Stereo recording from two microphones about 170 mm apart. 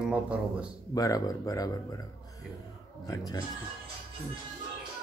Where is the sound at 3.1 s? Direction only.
20° left (ahead or behind).